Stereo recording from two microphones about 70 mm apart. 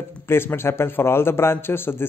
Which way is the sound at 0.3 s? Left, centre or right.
Left.